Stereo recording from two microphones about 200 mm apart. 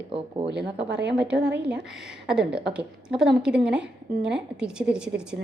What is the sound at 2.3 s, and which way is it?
A woman's voice, 5° right (ahead or behind).